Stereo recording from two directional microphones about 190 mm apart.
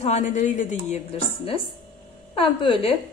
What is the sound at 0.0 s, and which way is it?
A woman's voice, 40° left (ahead or behind).